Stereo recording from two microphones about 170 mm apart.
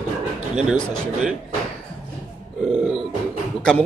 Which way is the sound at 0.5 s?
Centre (ahead or behind).